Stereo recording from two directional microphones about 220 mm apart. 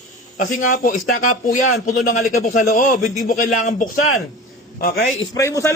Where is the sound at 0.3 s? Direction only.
35° left (ahead or behind).